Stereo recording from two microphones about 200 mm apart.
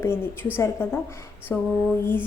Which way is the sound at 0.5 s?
10° left (ahead or behind).